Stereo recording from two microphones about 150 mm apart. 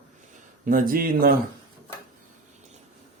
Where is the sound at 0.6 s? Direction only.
65° right (ahead or behind).